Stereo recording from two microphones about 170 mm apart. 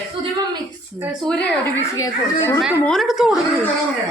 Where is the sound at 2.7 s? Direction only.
5° left (ahead or behind).